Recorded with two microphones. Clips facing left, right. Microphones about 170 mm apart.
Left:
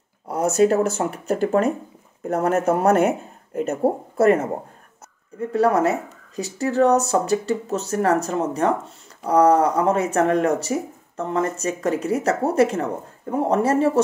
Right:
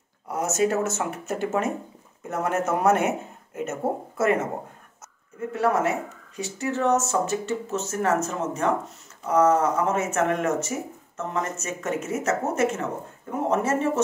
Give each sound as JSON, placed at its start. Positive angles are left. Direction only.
{"t": 0.3, "sound": "speech", "side_deg": 35}
{"t": 5.5, "sound": "speech", "side_deg": 35}